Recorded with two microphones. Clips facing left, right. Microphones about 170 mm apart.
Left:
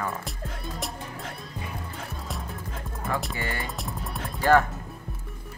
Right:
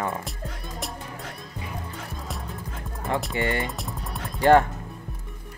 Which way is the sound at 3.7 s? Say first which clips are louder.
Even; centre (ahead or behind).